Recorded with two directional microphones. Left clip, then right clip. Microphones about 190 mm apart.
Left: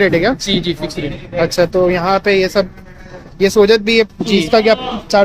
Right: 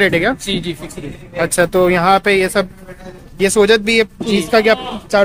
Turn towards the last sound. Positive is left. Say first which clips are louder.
# left 2 dB
turn(degrees=0)  # may be behind; listen again after turning